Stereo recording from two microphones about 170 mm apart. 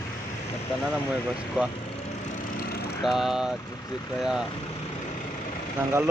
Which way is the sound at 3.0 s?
Centre (ahead or behind).